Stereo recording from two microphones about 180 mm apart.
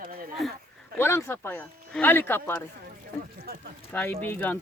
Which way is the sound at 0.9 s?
15° left (ahead or behind).